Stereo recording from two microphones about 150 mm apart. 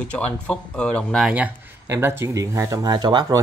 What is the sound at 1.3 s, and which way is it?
Speech, 15° right (ahead or behind).